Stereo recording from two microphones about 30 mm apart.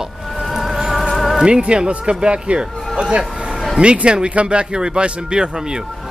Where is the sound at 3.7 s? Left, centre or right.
Right.